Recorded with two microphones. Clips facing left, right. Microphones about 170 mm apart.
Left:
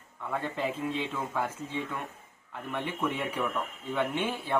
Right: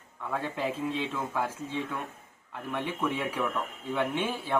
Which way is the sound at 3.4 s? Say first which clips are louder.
Right 1 dB; 5° left (ahead or behind).